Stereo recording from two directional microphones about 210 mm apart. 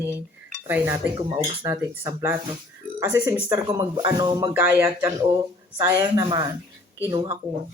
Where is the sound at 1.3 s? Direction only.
20° right (ahead or behind).